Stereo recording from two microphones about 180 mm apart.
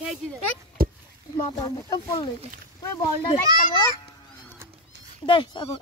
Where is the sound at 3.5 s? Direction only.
20° right (ahead or behind).